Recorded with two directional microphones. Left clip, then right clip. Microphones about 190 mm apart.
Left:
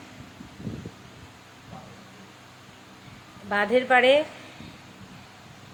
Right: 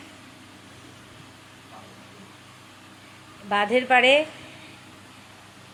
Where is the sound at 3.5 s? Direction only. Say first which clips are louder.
Right 1 dB; 10° left (ahead or behind).